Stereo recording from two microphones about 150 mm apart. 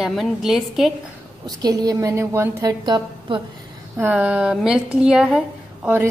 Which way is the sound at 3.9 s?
10° right (ahead or behind).